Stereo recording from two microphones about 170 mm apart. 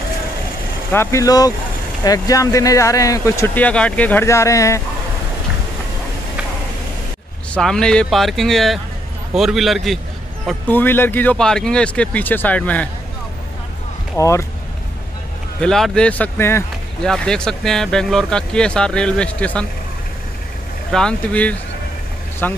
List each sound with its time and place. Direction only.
0.9 s speech: 20° left (ahead or behind)
7.5 s speech: 5° left (ahead or behind)
10.7 s speech: 10° left (ahead or behind)
14.1 s speech: 15° left (ahead or behind)
15.6 s speech: 5° left (ahead or behind)
20.9 s speech: 5° left (ahead or behind)